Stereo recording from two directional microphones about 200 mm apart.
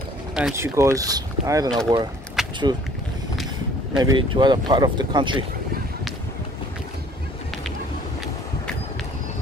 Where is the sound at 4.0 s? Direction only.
20° right (ahead or behind).